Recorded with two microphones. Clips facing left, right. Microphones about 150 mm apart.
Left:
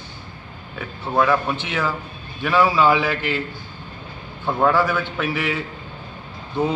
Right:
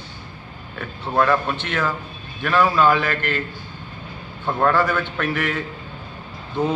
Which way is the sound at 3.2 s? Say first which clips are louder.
Left 1 dB; 60° right (ahead or behind).